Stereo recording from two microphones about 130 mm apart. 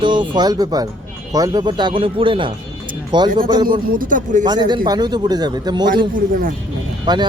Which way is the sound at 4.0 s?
90° right.